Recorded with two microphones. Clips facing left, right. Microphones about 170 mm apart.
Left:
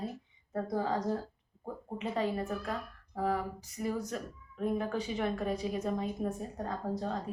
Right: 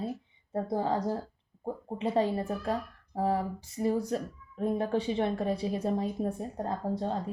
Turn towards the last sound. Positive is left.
turn(degrees=-30)  # may be behind; listen again after turning